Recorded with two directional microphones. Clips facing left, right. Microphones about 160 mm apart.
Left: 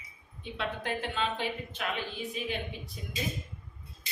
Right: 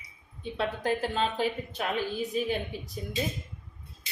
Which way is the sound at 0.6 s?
40° right (ahead or behind).